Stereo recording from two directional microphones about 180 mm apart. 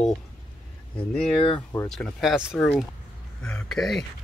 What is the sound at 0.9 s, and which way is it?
Speech, 30° left (ahead or behind).